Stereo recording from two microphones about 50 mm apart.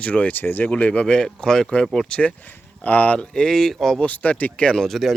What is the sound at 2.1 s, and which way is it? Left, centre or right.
Speech, left.